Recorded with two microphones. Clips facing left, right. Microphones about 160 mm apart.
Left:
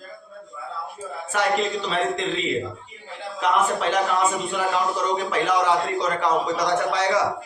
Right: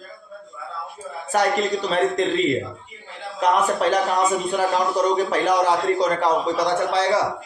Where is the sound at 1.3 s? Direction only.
40° right (ahead or behind).